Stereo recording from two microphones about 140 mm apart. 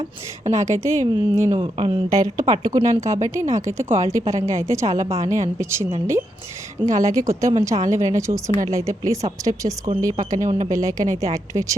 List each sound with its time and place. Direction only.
0.4 s a woman's voice: 20° right (ahead or behind)
2.1 s a woman's voice: 25° right (ahead or behind)